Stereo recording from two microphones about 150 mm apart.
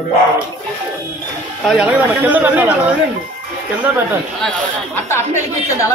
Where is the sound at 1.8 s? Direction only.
10° right (ahead or behind).